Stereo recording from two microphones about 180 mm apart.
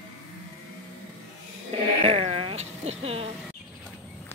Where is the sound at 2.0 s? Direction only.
35° right (ahead or behind).